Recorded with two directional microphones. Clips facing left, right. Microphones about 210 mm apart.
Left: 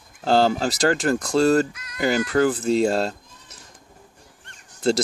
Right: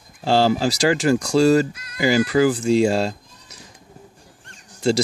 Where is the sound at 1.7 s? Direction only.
30° right (ahead or behind).